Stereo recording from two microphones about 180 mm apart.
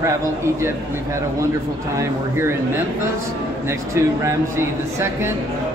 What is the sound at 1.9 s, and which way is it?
Speech, 15° right (ahead or behind).